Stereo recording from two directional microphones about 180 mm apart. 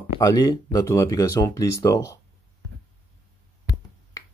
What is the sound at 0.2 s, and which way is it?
Speech, 20° left (ahead or behind).